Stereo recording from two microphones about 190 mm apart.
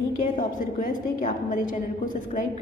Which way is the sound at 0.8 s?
45° left (ahead or behind).